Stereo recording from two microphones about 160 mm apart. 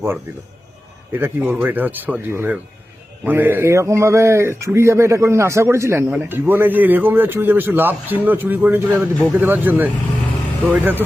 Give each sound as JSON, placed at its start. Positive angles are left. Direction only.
{"t": 1.1, "sound": "speech", "side_deg": -15}